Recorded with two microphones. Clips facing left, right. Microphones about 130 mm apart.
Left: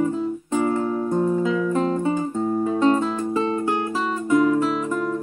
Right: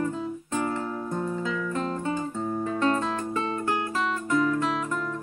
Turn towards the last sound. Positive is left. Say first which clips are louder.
# left 7 dB
turn(degrees=20)  # may be behind; listen again after turning